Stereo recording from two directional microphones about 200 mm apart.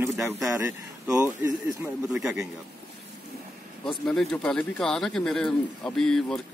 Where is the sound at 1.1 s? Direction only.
15° right (ahead or behind).